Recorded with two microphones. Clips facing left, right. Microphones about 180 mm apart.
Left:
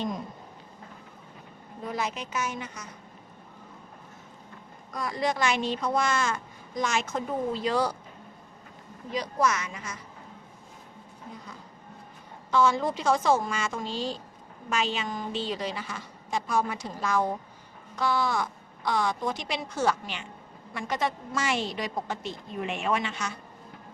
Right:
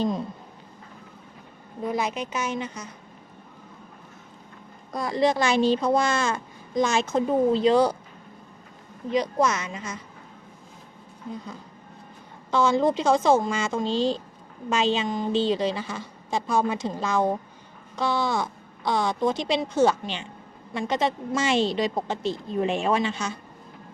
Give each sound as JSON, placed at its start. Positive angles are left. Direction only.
{"t": 1.9, "sound": "speech", "side_deg": -15}
{"t": 4.9, "sound": "speech", "side_deg": -30}
{"t": 9.0, "sound": "speech", "side_deg": -20}
{"t": 12.5, "sound": "speech", "side_deg": -25}